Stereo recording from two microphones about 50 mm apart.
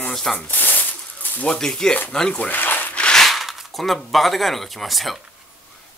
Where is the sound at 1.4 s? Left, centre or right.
Centre.